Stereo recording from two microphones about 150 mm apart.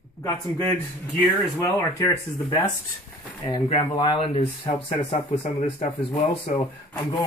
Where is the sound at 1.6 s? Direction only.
15° left (ahead or behind).